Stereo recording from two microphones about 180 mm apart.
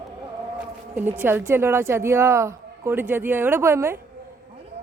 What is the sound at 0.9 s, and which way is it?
A woman's voice, 10° right (ahead or behind).